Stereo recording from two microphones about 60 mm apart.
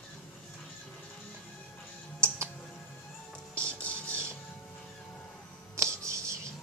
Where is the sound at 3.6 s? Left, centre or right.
Right.